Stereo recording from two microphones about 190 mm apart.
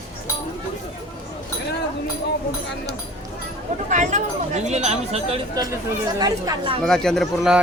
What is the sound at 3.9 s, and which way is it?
Speech, 40° right (ahead or behind).